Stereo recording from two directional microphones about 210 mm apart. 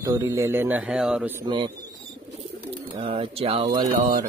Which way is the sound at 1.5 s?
20° right (ahead or behind).